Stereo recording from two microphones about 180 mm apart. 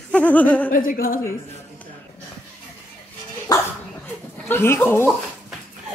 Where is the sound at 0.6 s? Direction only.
50° left (ahead or behind).